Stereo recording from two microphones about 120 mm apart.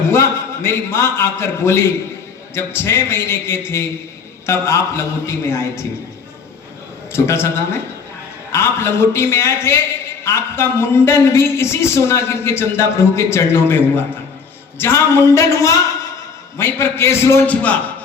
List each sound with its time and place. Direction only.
0.1 s a man's voice: 20° left (ahead or behind)
7.1 s a man's voice: 20° left (ahead or behind)